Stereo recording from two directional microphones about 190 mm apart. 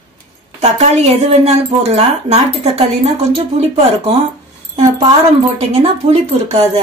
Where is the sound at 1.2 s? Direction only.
30° right (ahead or behind).